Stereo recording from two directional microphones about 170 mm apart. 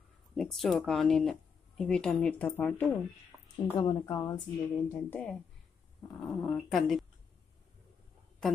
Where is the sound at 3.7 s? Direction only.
25° left (ahead or behind).